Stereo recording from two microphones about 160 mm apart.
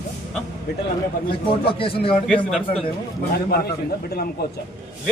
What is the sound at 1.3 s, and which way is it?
Speech, 35° left (ahead or behind).